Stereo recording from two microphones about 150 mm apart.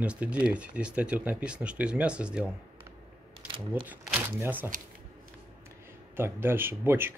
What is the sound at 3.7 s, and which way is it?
Speech, 15° right (ahead or behind).